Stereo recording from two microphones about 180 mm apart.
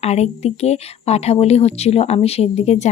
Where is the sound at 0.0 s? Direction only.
35° left (ahead or behind).